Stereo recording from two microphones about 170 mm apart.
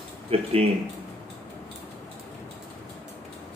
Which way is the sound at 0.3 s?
35° right (ahead or behind).